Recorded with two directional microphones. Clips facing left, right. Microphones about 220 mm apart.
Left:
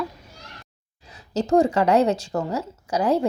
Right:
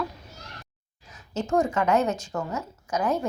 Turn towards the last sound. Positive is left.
turn(degrees=30)  # may be behind; listen again after turning